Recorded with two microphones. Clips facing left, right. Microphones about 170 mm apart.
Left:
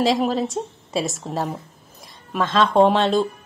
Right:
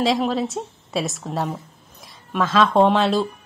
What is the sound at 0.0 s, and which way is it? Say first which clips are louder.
A woman's voice: left 1 dB; centre (ahead or behind).